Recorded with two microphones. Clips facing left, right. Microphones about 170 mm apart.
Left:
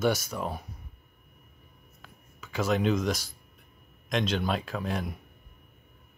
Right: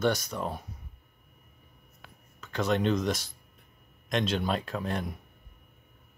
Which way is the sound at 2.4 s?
5° left (ahead or behind).